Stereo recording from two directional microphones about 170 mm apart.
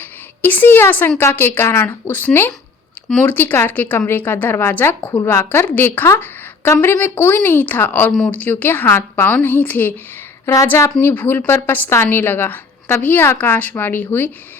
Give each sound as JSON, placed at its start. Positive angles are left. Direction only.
{"t": 0.0, "sound": "a woman's voice", "side_deg": 10}